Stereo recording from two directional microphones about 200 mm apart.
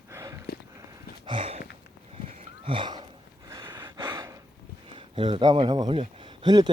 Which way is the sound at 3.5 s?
20° right (ahead or behind).